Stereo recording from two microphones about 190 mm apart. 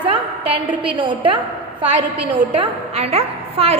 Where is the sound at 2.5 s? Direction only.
30° right (ahead or behind).